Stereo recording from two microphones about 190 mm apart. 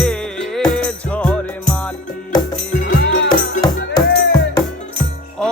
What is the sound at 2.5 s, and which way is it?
Music, 40° left (ahead or behind).